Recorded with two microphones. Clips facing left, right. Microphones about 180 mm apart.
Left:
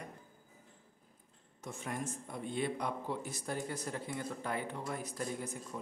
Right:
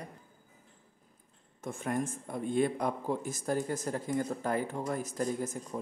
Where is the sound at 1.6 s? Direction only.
50° right (ahead or behind).